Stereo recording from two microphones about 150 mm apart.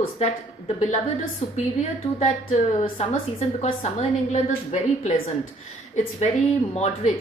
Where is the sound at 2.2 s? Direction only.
50° left (ahead or behind).